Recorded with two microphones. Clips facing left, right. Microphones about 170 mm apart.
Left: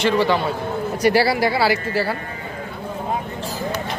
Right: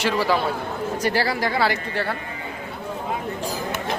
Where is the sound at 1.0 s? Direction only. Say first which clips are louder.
Left 7 dB; 10° left (ahead or behind).